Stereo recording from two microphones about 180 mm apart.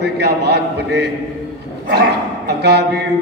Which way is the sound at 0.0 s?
65° right (ahead or behind).